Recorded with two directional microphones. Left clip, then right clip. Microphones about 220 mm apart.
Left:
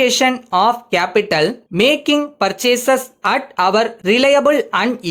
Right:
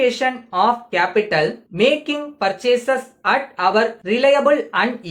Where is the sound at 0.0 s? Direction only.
50° left (ahead or behind).